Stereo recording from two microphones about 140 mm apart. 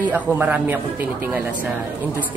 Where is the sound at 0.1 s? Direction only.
10° right (ahead or behind).